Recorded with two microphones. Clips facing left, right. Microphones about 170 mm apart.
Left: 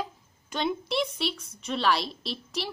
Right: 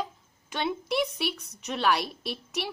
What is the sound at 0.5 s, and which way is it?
A woman's voice, 5° right (ahead or behind).